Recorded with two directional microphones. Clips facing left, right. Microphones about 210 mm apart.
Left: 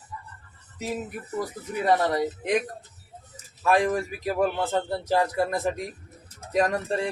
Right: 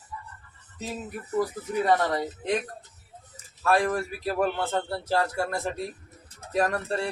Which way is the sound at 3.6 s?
15° left (ahead or behind).